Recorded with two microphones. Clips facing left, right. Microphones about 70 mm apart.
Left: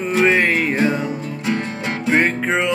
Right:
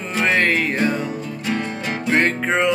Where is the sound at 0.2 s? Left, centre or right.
Centre.